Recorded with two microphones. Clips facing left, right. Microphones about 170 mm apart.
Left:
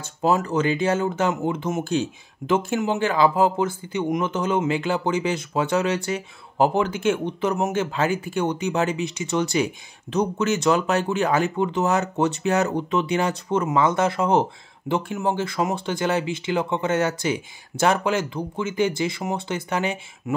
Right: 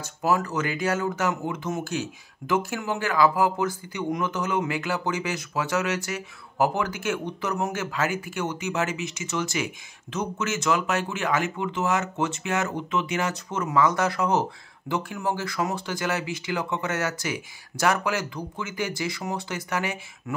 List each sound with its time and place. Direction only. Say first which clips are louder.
0.0 s speech: left 3 dB; 25° left (ahead or behind)